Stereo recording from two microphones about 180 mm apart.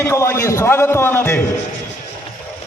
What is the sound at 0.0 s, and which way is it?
A man's voice, 15° left (ahead or behind).